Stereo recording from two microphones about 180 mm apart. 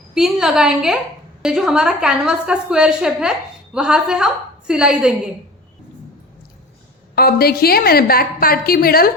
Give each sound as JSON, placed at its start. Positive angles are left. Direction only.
{"t": 0.1, "sound": "a woman's voice", "side_deg": -5}
{"t": 7.2, "sound": "a woman's voice", "side_deg": 60}